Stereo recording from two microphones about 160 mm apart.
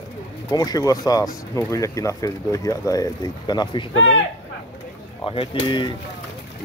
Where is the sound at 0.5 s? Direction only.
25° left (ahead or behind).